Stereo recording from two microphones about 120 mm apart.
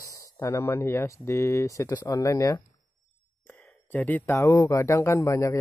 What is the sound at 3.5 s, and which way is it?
Speech, 15° left (ahead or behind).